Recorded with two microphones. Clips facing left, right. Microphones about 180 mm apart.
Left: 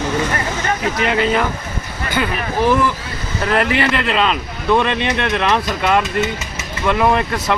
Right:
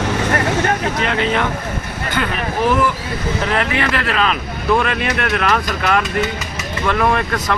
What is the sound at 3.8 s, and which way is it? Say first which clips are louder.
Speech: left 1 dB; 25° left (ahead or behind).